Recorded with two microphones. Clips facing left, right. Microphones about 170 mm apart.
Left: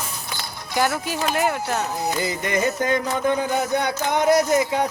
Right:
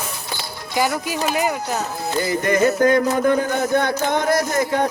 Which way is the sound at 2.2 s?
20° left (ahead or behind).